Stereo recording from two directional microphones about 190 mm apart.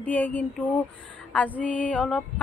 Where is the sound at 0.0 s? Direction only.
10° left (ahead or behind).